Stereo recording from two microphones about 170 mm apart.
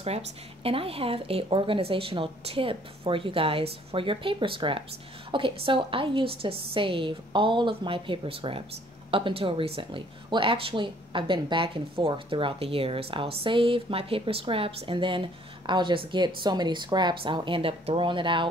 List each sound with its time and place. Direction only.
0.7 s speech: 35° right (ahead or behind)